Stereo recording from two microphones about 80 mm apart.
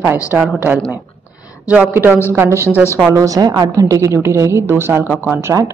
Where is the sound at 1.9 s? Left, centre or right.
Right.